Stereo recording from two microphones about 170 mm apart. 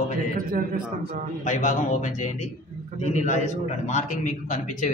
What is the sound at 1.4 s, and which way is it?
A man's voice, 45° left (ahead or behind).